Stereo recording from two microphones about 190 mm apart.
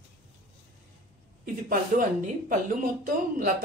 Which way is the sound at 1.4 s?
45° right (ahead or behind).